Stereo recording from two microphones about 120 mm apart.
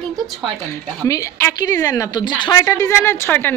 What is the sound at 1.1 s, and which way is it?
A woman's voice, 25° left (ahead or behind).